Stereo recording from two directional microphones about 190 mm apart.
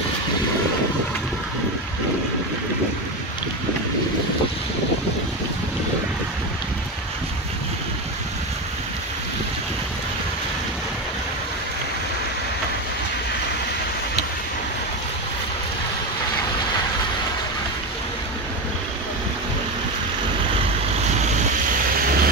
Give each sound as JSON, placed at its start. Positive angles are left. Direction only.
{"t": 22.0, "sound": "vehicle", "side_deg": -50}